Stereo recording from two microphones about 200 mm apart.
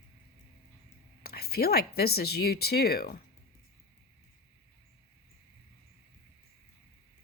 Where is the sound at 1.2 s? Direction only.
50° left (ahead or behind).